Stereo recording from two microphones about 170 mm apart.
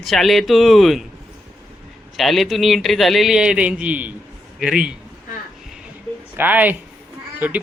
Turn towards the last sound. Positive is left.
turn(degrees=-10)  # may be behind; listen again after turning